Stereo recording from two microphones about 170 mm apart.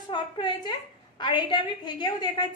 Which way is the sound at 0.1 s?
25° left (ahead or behind).